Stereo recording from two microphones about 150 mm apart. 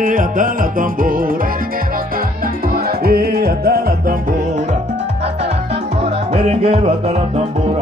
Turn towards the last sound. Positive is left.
turn(degrees=-40)  # may be behind; listen again after turning